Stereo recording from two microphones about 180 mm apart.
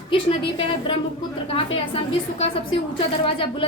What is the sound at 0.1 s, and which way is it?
A woman's voice, 30° left (ahead or behind).